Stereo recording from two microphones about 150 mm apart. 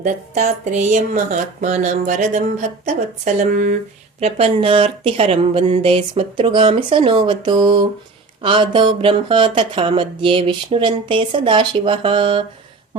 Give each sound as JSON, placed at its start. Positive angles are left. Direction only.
{"t": 0.0, "sound": "speech", "side_deg": -55}
{"t": 4.2, "sound": "speech", "side_deg": -40}